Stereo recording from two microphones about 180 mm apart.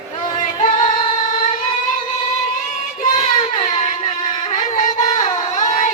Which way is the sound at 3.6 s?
45° left (ahead or behind).